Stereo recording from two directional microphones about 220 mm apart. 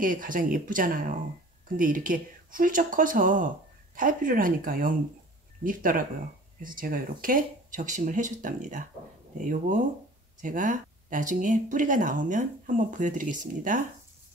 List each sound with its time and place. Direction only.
0.0 s speech: 40° right (ahead or behind)